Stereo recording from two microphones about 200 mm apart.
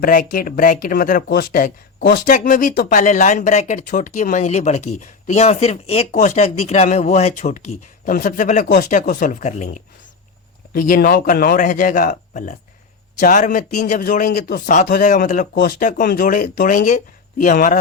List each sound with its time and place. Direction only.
0.0 s a man's voice: 45° left (ahead or behind)